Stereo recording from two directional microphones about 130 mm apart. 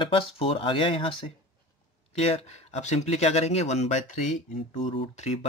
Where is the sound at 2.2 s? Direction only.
55° left (ahead or behind).